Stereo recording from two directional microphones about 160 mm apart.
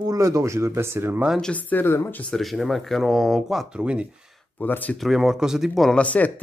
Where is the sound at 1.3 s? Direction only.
5° left (ahead or behind).